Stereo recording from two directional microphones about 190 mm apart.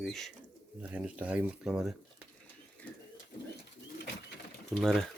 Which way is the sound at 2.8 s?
5° left (ahead or behind).